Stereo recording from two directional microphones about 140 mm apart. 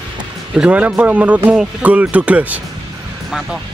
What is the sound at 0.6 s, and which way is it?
Speech, 10° right (ahead or behind).